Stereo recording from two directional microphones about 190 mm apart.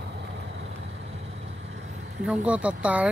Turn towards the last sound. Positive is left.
turn(degrees=-5)  # may be behind; listen again after turning